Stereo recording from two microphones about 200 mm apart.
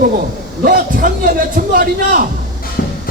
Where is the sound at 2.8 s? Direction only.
55° left (ahead or behind).